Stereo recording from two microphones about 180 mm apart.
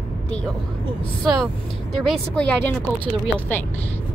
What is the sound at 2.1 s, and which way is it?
Speech, 5° left (ahead or behind).